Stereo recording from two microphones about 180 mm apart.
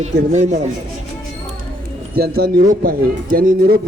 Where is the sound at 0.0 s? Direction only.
40° right (ahead or behind).